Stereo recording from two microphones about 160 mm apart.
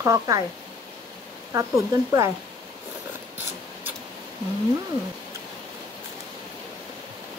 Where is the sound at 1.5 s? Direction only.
20° right (ahead or behind).